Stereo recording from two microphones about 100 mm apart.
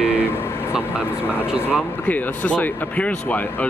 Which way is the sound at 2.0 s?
15° left (ahead or behind).